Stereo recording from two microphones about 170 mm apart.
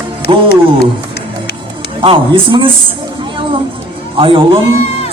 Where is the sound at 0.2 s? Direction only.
70° left (ahead or behind).